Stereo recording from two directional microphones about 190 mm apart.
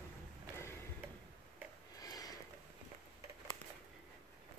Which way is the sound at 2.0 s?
20° left (ahead or behind).